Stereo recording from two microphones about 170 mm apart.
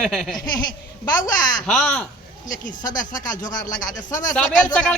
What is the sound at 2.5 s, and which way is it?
Speech, 50° left (ahead or behind).